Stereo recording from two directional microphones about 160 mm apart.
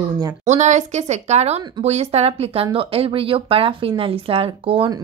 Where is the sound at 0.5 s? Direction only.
45° right (ahead or behind).